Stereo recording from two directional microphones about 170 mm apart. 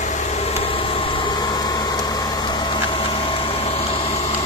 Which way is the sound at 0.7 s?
30° left (ahead or behind).